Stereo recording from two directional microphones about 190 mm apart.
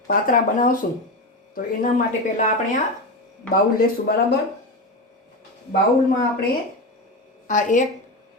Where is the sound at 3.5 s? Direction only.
50° left (ahead or behind).